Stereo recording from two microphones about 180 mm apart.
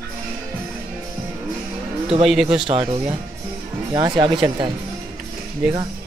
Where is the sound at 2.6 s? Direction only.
30° right (ahead or behind).